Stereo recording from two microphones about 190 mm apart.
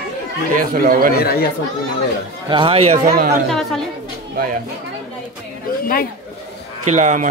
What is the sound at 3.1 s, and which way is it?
Speech, 50° right (ahead or behind).